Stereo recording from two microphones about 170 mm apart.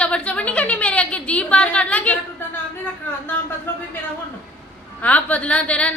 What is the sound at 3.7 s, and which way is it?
Speech, 10° left (ahead or behind).